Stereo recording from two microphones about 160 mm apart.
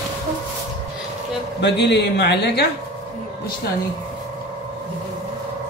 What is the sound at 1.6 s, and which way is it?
A man's voice, 90° left.